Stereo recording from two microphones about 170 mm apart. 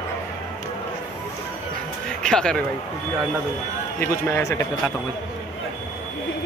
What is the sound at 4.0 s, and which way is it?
Speech, 15° left (ahead or behind).